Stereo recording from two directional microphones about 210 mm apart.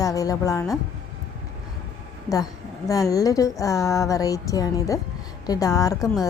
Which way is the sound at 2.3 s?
15° left (ahead or behind).